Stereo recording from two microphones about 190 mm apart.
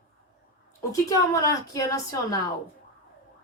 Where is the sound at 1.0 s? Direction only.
20° left (ahead or behind).